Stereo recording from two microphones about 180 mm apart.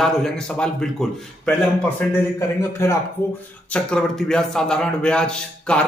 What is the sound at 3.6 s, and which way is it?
A man's voice, 5° left (ahead or behind).